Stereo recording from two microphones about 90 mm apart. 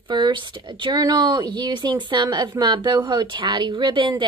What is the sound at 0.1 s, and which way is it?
A woman's voice, 55° right (ahead or behind).